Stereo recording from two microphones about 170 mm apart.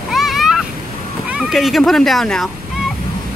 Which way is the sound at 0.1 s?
Centre (ahead or behind).